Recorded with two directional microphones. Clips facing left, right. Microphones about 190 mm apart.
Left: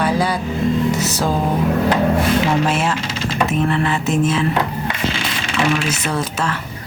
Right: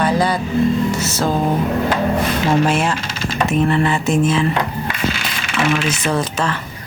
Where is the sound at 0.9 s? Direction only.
15° left (ahead or behind).